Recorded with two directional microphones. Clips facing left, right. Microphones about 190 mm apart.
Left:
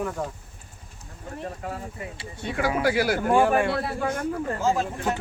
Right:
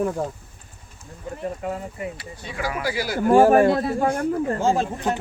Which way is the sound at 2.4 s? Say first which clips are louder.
Left 4 dB; 60° left (ahead or behind).